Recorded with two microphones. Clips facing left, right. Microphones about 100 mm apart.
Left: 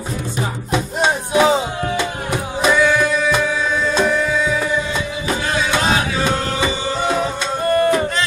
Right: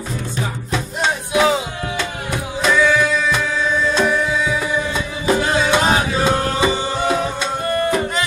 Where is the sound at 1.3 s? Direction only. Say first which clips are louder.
Left 1 dB; 30° left (ahead or behind).